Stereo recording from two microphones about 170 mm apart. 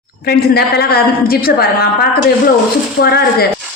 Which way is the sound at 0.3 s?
65° left (ahead or behind).